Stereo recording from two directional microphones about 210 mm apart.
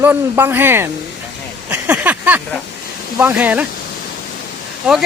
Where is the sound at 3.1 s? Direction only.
5° right (ahead or behind).